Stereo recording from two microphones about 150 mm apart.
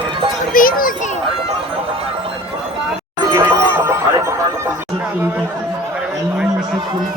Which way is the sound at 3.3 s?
15° right (ahead or behind).